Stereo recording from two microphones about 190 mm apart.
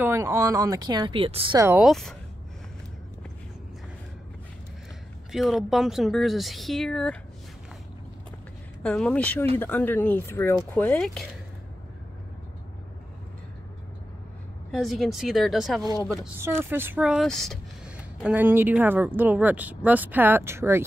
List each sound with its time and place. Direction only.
0.0 s speech: 15° right (ahead or behind)
1.8 s speech: centre (ahead or behind)
5.3 s speech: centre (ahead or behind)
8.8 s speech: 5° left (ahead or behind)
14.7 s speech: centre (ahead or behind)
16.3 s speech: 10° right (ahead or behind)